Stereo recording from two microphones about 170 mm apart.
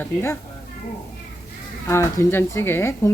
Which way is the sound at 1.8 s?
15° left (ahead or behind).